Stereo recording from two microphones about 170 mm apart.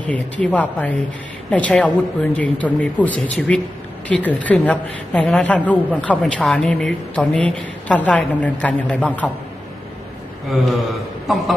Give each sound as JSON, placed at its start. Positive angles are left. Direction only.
{"t": 0.0, "sound": "a man's voice", "side_deg": 10}
{"t": 10.5, "sound": "a man's voice", "side_deg": 0}